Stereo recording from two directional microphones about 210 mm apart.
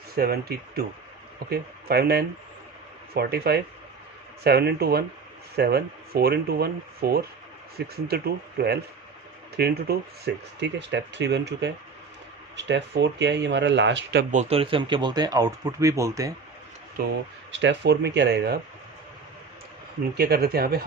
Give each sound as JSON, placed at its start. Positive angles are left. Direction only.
{"t": 0.1, "sound": "speech", "side_deg": -50}
{"t": 14.3, "sound": "speech", "side_deg": -30}
{"t": 17.5, "sound": "speech", "side_deg": -55}
{"t": 20.1, "sound": "speech", "side_deg": -50}